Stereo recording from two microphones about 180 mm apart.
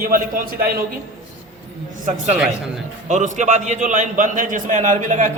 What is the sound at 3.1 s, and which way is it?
A man's voice, 40° right (ahead or behind).